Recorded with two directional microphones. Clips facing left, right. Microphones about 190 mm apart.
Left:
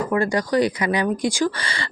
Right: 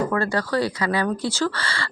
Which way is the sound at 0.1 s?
15° left (ahead or behind).